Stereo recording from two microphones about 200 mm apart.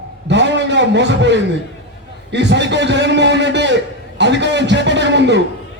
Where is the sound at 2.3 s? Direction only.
60° right (ahead or behind).